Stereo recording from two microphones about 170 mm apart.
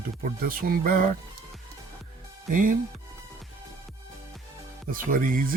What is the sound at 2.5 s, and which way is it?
Speech, 50° right (ahead or behind).